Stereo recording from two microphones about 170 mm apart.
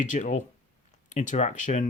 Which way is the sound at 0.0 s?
45° left (ahead or behind).